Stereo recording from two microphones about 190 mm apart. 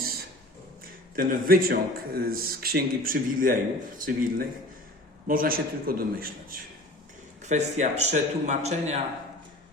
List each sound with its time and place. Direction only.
0.0 s a sound: 50° right (ahead or behind)
1.1 s a man's voice: 50° right (ahead or behind)
7.4 s a man's voice: 40° right (ahead or behind)